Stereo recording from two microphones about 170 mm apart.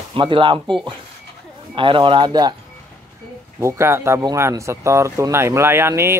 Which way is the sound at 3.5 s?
15° right (ahead or behind).